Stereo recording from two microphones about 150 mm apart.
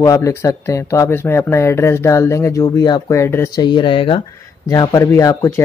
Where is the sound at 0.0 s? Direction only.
20° left (ahead or behind).